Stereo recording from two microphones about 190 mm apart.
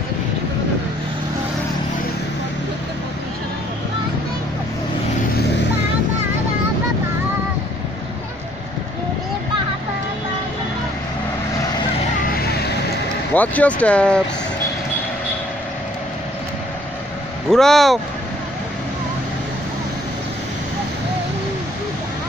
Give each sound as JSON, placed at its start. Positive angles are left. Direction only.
{"t": 12.3, "sound": "vehicle", "side_deg": 50}
{"t": 13.3, "sound": "speech", "side_deg": 10}
{"t": 17.5, "sound": "speech", "side_deg": 0}